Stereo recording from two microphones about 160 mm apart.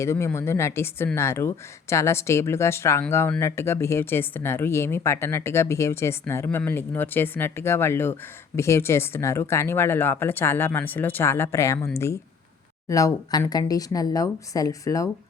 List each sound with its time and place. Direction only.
0.0 s speech: 15° left (ahead or behind)